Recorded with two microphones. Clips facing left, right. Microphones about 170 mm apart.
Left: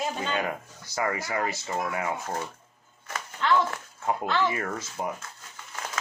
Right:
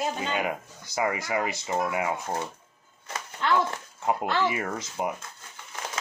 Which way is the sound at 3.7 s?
20° right (ahead or behind).